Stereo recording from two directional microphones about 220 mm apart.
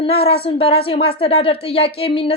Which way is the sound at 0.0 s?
25° left (ahead or behind).